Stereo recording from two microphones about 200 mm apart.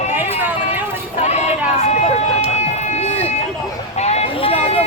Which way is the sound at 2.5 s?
35° left (ahead or behind).